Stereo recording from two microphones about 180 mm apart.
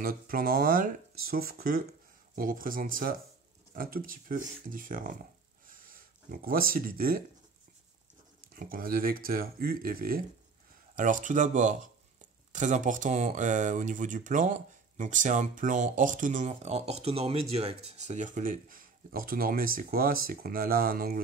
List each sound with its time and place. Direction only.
0.0 s speech: 55° right (ahead or behind)
6.4 s speech: 55° right (ahead or behind)
8.5 s speech: 55° right (ahead or behind)